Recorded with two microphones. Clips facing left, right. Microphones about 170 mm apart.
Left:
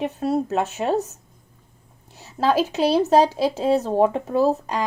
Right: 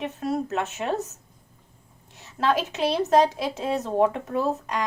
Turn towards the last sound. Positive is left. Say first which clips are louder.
# left 6 dB
turn(degrees=35)  # may be behind; listen again after turning